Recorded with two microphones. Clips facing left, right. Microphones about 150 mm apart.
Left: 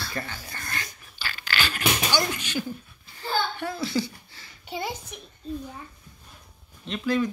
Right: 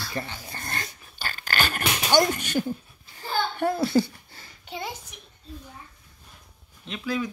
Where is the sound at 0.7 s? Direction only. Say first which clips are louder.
Right 1 dB; 45° right (ahead or behind).